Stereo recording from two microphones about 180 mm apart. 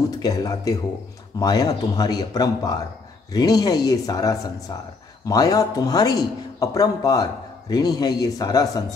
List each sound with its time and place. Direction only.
0.2 s a man's voice: 20° left (ahead or behind)